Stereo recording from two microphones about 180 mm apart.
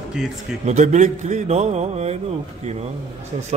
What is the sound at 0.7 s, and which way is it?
A man's voice, 40° right (ahead or behind).